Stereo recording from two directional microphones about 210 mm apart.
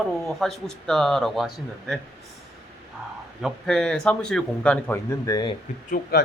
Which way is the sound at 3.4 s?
Centre (ahead or behind).